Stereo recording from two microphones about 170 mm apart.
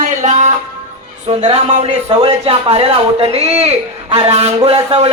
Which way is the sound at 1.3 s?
30° right (ahead or behind).